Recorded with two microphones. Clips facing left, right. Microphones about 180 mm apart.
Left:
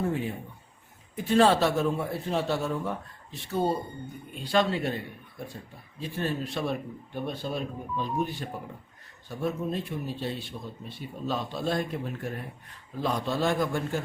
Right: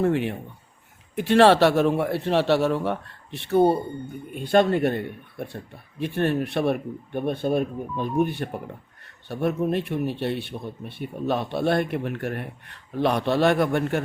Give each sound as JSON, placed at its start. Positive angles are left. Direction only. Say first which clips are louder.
{"t": 0.0, "sound": "speech", "louder": "right 7 dB", "side_deg": -75}